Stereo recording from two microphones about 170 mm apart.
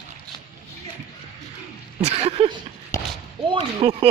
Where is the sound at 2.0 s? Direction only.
35° right (ahead or behind).